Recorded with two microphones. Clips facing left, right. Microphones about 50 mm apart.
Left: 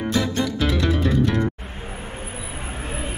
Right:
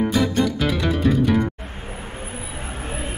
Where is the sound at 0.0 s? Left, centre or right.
Centre.